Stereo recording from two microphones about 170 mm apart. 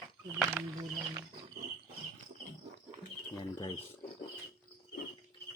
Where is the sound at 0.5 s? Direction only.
20° right (ahead or behind).